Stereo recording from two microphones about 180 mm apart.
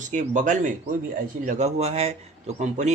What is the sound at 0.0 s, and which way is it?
A man's voice, 45° right (ahead or behind).